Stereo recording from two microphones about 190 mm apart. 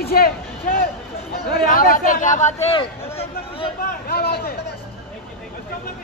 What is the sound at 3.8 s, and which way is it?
Speech, 55° left (ahead or behind).